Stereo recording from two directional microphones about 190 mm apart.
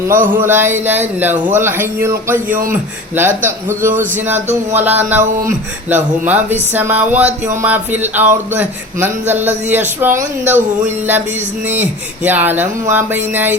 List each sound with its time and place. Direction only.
0.1 s a sound: 45° right (ahead or behind)
0.3 s speech: 10° right (ahead or behind)
11.7 s speech: 10° right (ahead or behind)